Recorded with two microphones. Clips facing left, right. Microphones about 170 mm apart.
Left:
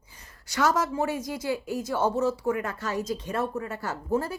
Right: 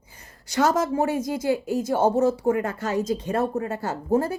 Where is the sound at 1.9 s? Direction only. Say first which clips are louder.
Right 5 dB; 50° right (ahead or behind).